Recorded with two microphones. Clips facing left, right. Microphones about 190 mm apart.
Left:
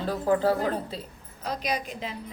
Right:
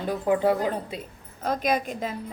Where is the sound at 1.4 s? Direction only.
50° right (ahead or behind).